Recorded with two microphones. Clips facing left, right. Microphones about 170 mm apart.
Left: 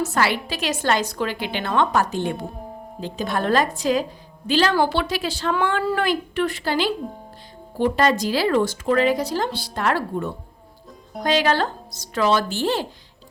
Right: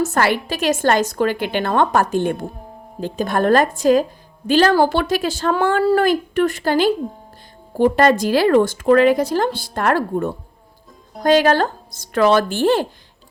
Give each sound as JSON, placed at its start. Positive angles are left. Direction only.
{"t": 0.0, "sound": "speech", "side_deg": -50}